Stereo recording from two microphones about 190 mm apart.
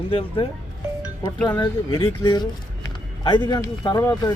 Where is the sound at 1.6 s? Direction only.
25° left (ahead or behind).